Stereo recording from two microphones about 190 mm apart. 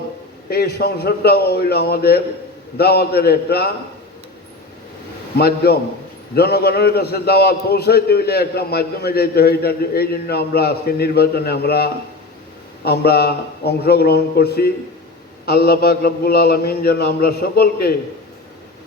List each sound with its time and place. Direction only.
0.5 s a man's voice: 55° left (ahead or behind)
5.4 s a man's voice: 55° left (ahead or behind)